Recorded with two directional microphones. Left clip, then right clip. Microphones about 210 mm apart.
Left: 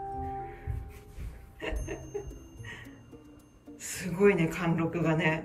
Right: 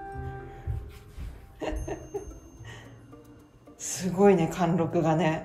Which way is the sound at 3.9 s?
15° right (ahead or behind).